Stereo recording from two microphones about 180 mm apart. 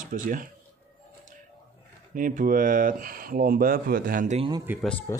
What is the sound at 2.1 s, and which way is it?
Speech, 50° right (ahead or behind).